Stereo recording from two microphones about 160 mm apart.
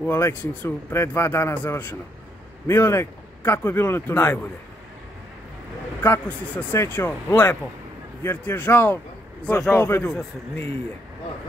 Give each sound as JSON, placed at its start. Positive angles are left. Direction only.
{"t": 0.1, "sound": "speech", "side_deg": 15}
{"t": 6.0, "sound": "speech", "side_deg": 10}